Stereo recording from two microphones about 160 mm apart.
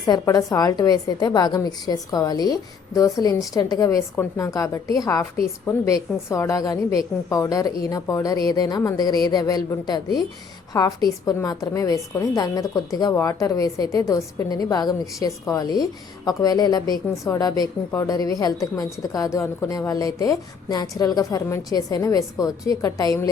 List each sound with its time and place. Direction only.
0.0 s a woman's voice: 20° left (ahead or behind)